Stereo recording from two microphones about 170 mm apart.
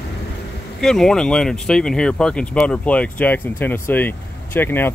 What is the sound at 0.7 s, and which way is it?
Speech, 5° left (ahead or behind).